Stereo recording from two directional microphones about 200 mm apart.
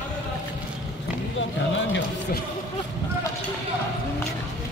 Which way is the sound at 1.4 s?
65° left (ahead or behind).